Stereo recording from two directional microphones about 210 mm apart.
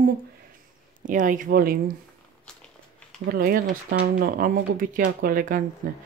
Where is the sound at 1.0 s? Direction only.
40° right (ahead or behind).